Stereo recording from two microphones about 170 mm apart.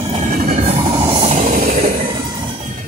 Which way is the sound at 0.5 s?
35° right (ahead or behind).